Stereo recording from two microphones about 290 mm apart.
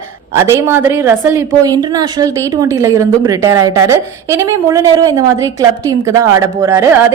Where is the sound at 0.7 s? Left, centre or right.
Centre.